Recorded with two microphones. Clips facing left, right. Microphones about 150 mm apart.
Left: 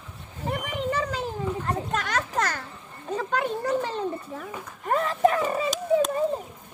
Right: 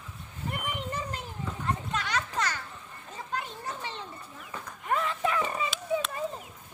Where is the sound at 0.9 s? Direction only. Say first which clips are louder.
Left 8 dB; 90° left.